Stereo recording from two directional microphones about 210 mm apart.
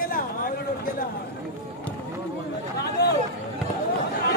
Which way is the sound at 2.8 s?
50° left (ahead or behind).